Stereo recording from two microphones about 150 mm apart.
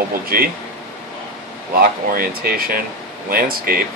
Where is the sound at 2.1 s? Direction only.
80° right.